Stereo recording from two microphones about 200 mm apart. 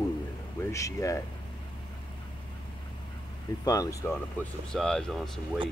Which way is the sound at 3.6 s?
15° left (ahead or behind).